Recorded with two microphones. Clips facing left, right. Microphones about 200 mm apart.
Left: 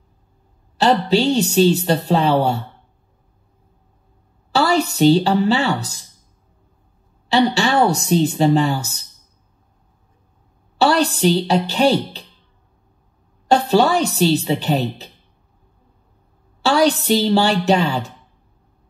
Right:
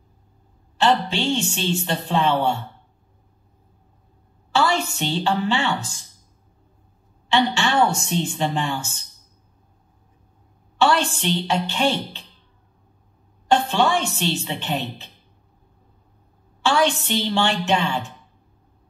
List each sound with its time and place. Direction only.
0.7 s a woman's voice: 40° left (ahead or behind)
4.5 s a woman's voice: 40° left (ahead or behind)
7.2 s a woman's voice: 40° left (ahead or behind)
10.8 s a woman's voice: 40° left (ahead or behind)
13.5 s a woman's voice: 40° left (ahead or behind)
16.6 s a woman's voice: 40° left (ahead or behind)